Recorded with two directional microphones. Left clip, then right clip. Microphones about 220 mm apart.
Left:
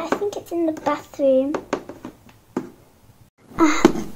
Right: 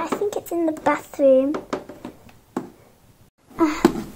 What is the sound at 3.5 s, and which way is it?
Wail, 40° left (ahead or behind).